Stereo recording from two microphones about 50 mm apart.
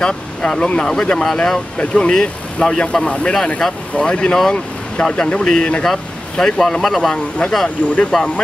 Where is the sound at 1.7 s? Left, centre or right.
Left.